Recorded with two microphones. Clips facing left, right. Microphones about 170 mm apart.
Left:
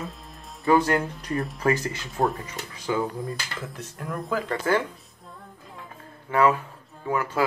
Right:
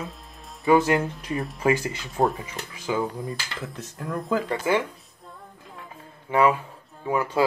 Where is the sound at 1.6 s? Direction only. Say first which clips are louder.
Right 2 dB; 20° right (ahead or behind).